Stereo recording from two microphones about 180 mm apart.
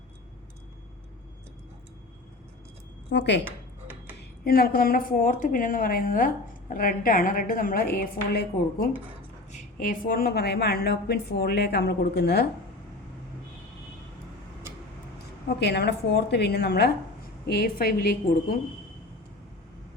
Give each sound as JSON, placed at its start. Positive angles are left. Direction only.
{"t": 3.1, "sound": "a woman's voice", "side_deg": 70}
{"t": 3.4, "sound": "dishes", "side_deg": -10}
{"t": 4.4, "sound": "a woman's voice", "side_deg": 55}
{"t": 9.5, "sound": "a woman's voice", "side_deg": 45}
{"t": 15.6, "sound": "a woman's voice", "side_deg": 70}